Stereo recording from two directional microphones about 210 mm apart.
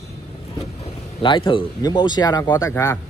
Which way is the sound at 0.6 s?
25° left (ahead or behind).